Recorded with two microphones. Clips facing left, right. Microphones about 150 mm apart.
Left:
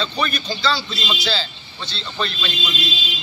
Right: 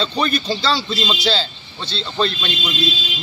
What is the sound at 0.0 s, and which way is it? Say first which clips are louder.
A man's voice: right 4 dB; 30° right (ahead or behind).